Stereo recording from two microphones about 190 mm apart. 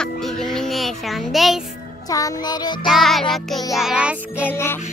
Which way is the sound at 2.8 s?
Centre (ahead or behind).